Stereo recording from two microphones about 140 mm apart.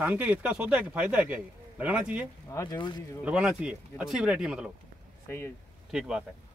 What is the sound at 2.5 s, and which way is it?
Speech, 30° left (ahead or behind).